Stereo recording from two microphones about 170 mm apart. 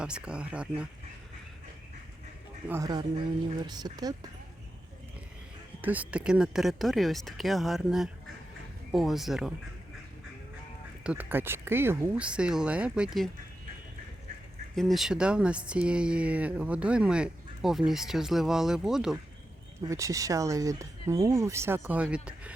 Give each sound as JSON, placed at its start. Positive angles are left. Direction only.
{"t": 0.0, "sound": "speech", "side_deg": -5}
{"t": 2.6, "sound": "speech", "side_deg": -20}
{"t": 5.8, "sound": "speech", "side_deg": -10}
{"t": 11.0, "sound": "speech", "side_deg": -10}
{"t": 14.8, "sound": "speech", "side_deg": 0}
{"t": 19.8, "sound": "speech", "side_deg": -20}